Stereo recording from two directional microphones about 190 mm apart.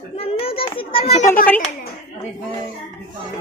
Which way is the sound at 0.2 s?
30° left (ahead or behind).